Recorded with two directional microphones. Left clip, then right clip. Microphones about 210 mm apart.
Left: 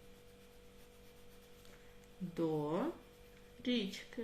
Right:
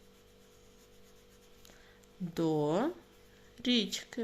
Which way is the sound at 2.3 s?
55° right (ahead or behind).